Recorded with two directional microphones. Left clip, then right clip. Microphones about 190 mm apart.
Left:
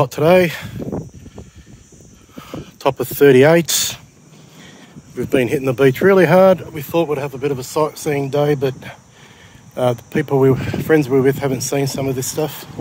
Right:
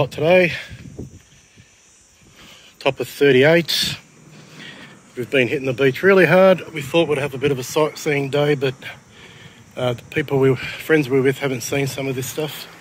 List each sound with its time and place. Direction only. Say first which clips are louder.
0.0 s speech: left 2 dB; 35° left (ahead or behind)
2.8 s speech: left 4 dB; 25° left (ahead or behind)
4.6 s speech: right 4 dB; 10° left (ahead or behind)